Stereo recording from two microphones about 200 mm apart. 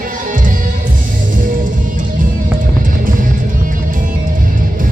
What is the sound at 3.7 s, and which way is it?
Music, 40° right (ahead or behind).